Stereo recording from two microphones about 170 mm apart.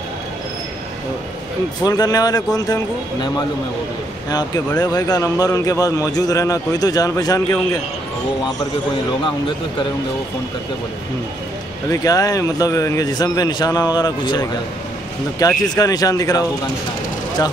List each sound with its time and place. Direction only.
1.9 s speech: 20° left (ahead or behind)
11.9 s speech: 20° left (ahead or behind)